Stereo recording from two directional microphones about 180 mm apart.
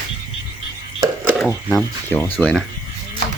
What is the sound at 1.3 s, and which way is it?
Speech, centre (ahead or behind).